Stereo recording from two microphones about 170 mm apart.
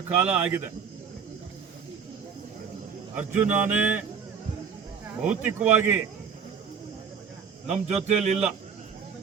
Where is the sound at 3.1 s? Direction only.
10° right (ahead or behind).